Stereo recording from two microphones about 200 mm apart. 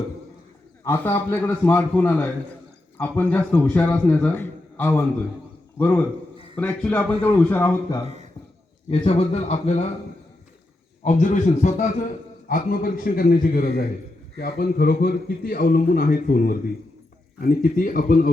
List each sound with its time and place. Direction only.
0.9 s a man's voice: 10° left (ahead or behind)
8.0 s speech: 35° right (ahead or behind)
8.9 s speech: 30° left (ahead or behind)
11.0 s a man's voice: 35° left (ahead or behind)